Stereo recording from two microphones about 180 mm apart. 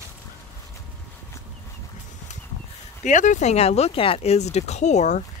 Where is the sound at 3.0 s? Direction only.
45° left (ahead or behind).